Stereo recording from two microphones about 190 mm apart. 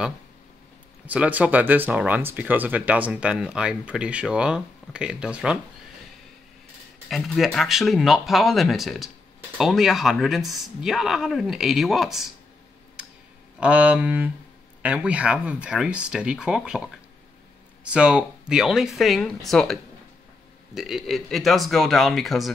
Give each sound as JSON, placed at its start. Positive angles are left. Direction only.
{"t": 1.0, "sound": "speech", "side_deg": -10}
{"t": 7.1, "sound": "speech", "side_deg": 0}
{"t": 13.6, "sound": "speech", "side_deg": -5}